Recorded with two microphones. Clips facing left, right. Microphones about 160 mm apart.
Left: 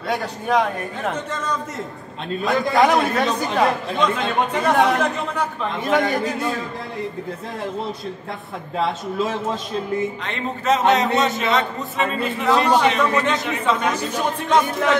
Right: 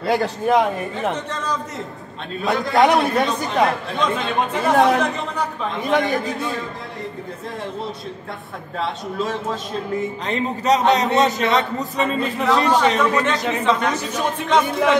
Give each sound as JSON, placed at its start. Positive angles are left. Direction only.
{"t": 0.0, "sound": "speech", "side_deg": 0}
{"t": 2.4, "sound": "speech", "side_deg": 0}
{"t": 8.7, "sound": "speech", "side_deg": 0}
{"t": 10.2, "sound": "a man's voice", "side_deg": -40}
{"t": 10.8, "sound": "speech", "side_deg": 0}